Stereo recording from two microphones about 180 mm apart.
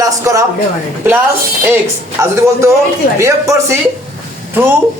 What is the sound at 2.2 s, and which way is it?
A man's voice, 20° right (ahead or behind).